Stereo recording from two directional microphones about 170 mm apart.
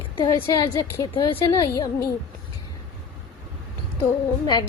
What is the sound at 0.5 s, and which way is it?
A woman's voice, 20° left (ahead or behind).